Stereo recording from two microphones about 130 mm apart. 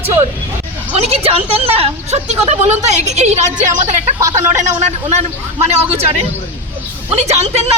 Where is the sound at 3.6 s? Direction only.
70° right (ahead or behind).